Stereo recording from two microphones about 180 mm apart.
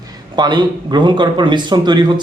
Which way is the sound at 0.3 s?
25° right (ahead or behind).